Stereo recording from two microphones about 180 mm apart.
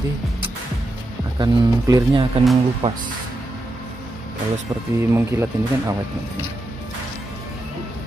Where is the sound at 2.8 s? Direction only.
40° right (ahead or behind).